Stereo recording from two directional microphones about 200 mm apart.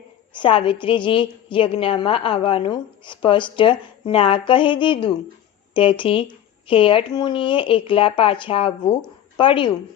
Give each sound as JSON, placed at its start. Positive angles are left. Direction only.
{"t": 0.3, "sound": "a woman's voice", "side_deg": 25}